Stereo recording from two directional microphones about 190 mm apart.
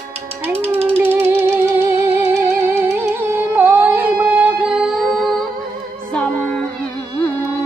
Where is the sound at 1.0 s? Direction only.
10° right (ahead or behind); by 6.6 s 5° left (ahead or behind).